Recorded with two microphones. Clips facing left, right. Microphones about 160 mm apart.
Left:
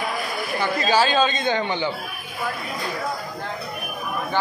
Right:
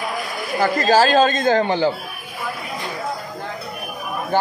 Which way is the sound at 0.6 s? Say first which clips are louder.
Right 5 dB; 45° right (ahead or behind).